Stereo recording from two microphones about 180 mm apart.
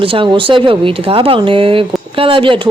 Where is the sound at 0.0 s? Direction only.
30° right (ahead or behind).